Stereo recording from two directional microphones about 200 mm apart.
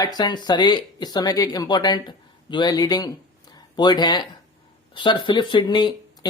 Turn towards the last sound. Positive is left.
turn(degrees=20)  # may be behind; listen again after turning